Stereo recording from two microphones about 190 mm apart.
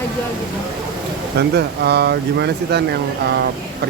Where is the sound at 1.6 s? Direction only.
60° right (ahead or behind).